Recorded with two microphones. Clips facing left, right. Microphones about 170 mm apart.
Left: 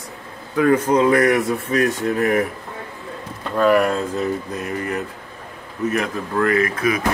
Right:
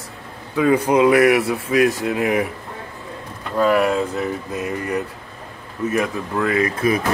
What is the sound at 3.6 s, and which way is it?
Speech, 10° right (ahead or behind).